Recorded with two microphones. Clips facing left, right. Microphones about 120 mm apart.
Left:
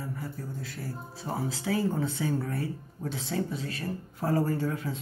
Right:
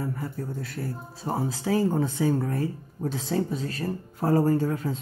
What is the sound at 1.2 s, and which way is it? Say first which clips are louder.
Speech: right 4 dB; 40° right (ahead or behind).